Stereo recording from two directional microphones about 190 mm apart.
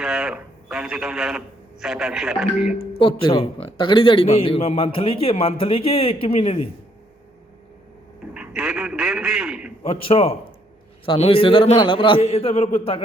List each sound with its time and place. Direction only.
0.0 s a man's voice: 5° right (ahead or behind)
3.0 s a man's voice: 25° left (ahead or behind)
8.3 s a man's voice: 5° right (ahead or behind)
9.8 s a man's voice: 30° left (ahead or behind)